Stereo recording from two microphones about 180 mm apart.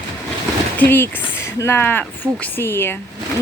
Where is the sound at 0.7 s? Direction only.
10° left (ahead or behind).